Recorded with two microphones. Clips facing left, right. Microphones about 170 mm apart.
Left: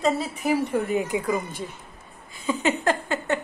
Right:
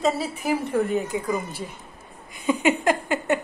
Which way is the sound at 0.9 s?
15° left (ahead or behind).